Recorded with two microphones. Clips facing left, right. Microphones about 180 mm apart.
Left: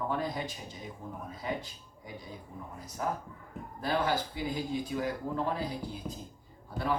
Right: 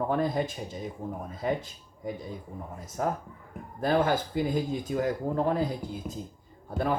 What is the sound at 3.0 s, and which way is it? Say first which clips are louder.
Speech: right 4 dB; 50° right (ahead or behind).